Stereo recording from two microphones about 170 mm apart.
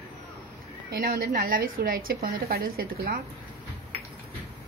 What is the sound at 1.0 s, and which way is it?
A woman's voice, 65° right (ahead or behind).